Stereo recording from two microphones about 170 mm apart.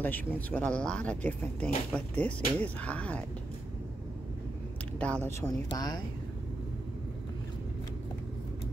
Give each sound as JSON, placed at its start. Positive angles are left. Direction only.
{"t": 0.0, "sound": "speech", "side_deg": 10}
{"t": 4.9, "sound": "speech", "side_deg": 10}
{"t": 5.4, "sound": "speech", "side_deg": 25}